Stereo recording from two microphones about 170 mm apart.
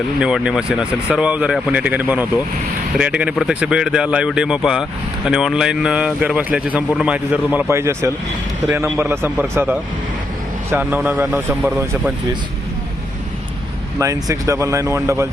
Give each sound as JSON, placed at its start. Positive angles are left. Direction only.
{"t": 0.2, "sound": "speech", "side_deg": -5}
{"t": 14.0, "sound": "speech", "side_deg": -20}